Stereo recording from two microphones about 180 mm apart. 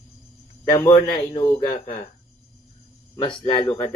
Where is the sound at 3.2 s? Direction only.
30° left (ahead or behind).